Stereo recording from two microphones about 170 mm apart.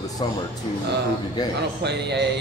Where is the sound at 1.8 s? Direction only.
80° right.